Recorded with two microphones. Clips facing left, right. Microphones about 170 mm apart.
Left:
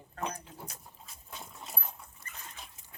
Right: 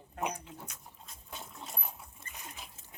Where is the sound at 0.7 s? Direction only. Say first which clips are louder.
Left 2 dB; 30° left (ahead or behind).